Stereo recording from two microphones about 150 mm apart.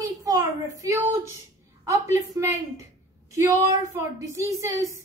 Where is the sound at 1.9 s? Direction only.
20° right (ahead or behind).